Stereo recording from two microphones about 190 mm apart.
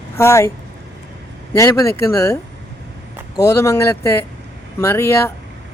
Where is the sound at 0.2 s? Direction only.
15° left (ahead or behind).